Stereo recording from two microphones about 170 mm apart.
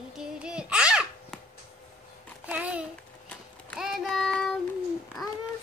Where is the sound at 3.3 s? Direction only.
5° left (ahead or behind).